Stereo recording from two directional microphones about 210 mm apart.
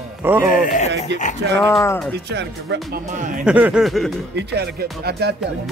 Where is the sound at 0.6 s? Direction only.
35° left (ahead or behind).